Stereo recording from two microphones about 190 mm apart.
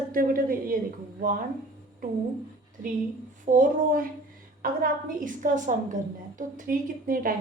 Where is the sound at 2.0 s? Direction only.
45° right (ahead or behind).